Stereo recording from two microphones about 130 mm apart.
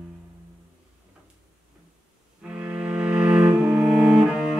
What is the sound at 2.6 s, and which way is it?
Cello, 5° right (ahead or behind).